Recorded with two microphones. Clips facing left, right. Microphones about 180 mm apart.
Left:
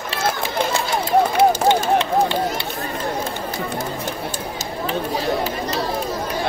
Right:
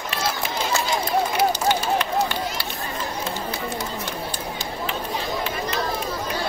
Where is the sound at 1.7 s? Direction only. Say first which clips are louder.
Left 5 dB; 25° left (ahead or behind).